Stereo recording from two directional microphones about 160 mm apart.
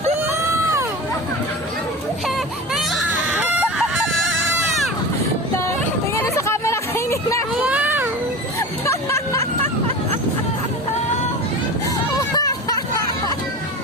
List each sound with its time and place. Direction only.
0.2 s a sound: 15° right (ahead or behind)
3.5 s fowl: 5° right (ahead or behind)
6.2 s music: 15° left (ahead or behind)
7.6 s baby cry: 10° right (ahead or behind)
8.8 s music: 15° left (ahead or behind)
12.1 s music: 20° left (ahead or behind)